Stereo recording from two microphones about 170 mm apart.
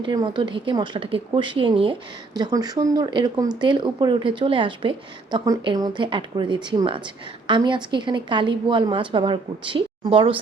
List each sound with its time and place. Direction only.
0.0 s speech: 25° right (ahead or behind)